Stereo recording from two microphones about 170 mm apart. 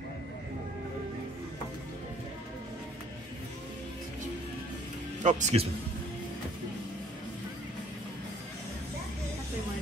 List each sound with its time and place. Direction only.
5.2 s a man's voice: 40° right (ahead or behind)